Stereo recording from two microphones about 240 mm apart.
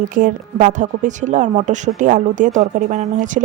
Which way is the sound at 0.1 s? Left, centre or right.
Right.